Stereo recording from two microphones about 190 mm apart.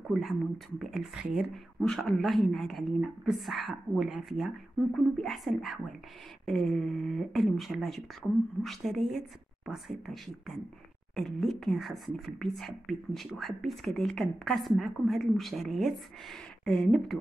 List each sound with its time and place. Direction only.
0.1 s speech: centre (ahead or behind)